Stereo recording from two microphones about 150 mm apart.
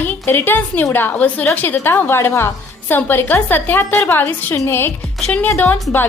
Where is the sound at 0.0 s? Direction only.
15° left (ahead or behind).